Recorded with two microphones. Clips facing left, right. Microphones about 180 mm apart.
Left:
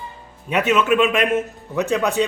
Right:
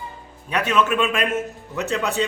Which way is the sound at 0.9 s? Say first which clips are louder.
Left 5 dB; 20° left (ahead or behind).